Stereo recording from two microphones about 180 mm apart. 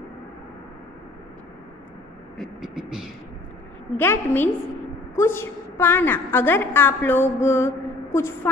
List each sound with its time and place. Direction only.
2.3 s speech: centre (ahead or behind)
3.9 s a woman's voice: 10° left (ahead or behind)